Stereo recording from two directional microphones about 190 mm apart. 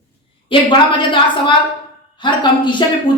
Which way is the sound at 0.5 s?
25° left (ahead or behind).